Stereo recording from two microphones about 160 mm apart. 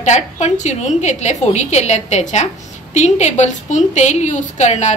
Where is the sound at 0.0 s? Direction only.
45° left (ahead or behind).